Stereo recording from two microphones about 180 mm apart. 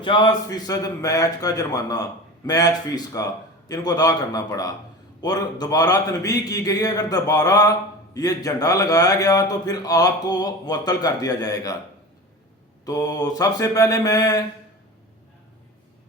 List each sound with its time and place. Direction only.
0.0 s a man's voice: 25° left (ahead or behind)
12.8 s a man's voice: 20° left (ahead or behind)